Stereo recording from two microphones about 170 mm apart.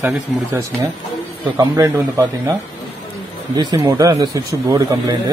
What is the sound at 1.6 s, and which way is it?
Speech, 20° right (ahead or behind).